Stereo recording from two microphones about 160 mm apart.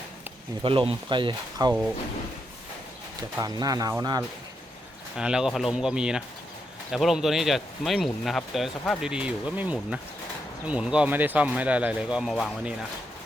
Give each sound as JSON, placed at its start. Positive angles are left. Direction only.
{"t": 0.6, "sound": "speech", "side_deg": -35}
{"t": 3.2, "sound": "speech", "side_deg": -25}
{"t": 5.1, "sound": "speech", "side_deg": -5}